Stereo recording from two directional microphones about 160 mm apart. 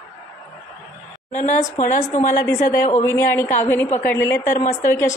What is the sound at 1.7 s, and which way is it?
Speech, 55° left (ahead or behind).